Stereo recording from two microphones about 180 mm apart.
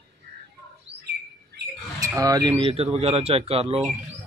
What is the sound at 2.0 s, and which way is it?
Speech, 20° right (ahead or behind).